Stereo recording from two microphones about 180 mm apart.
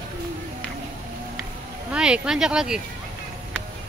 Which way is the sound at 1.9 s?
5° right (ahead or behind).